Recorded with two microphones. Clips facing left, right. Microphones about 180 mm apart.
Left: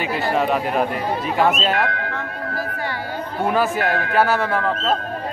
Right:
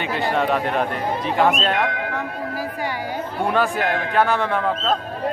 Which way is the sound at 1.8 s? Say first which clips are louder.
Even; 15° right (ahead or behind).